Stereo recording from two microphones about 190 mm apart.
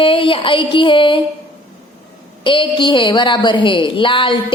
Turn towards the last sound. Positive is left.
turn(degrees=25)  # may be behind; listen again after turning